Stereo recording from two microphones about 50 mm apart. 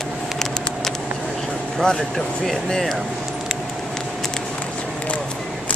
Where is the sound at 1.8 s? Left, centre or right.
Centre.